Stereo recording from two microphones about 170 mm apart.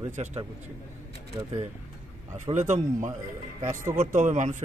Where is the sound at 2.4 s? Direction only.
45° right (ahead or behind).